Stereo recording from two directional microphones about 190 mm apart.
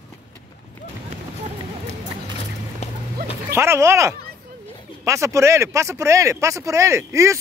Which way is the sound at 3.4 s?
15° right (ahead or behind).